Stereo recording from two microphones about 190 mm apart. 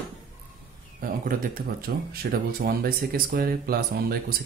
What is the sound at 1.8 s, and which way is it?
Speech, 55° right (ahead or behind).